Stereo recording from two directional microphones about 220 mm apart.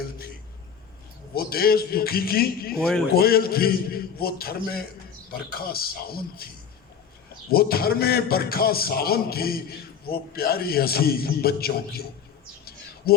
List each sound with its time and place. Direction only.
1.3 s a man's voice: 45° left (ahead or behind)
2.7 s a man's voice: 5° left (ahead or behind)
3.1 s a man's voice: 45° left (ahead or behind)
7.5 s a man's voice: 45° left (ahead or behind)
13.1 s speech: 45° left (ahead or behind)